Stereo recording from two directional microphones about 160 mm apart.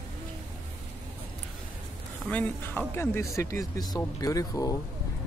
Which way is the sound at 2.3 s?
10° left (ahead or behind).